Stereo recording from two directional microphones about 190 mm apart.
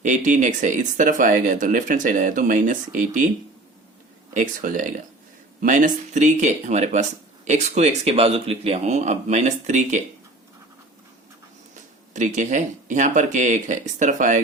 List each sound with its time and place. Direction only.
0.0 s speech: 40° right (ahead or behind)
4.4 s speech: 40° right (ahead or behind)
11.7 s speech: 40° right (ahead or behind)